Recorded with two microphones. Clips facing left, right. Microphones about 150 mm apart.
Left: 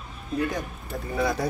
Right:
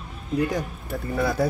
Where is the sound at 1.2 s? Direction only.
5° right (ahead or behind).